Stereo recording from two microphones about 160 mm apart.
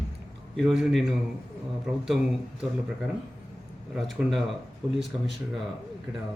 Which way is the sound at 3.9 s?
Centre (ahead or behind).